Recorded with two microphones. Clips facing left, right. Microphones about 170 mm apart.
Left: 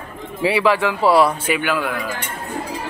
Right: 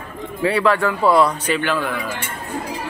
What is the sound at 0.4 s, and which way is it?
Speech, 5° left (ahead or behind).